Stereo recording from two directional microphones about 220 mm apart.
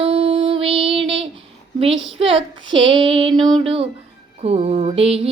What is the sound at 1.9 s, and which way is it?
Speech, 55° right (ahead or behind).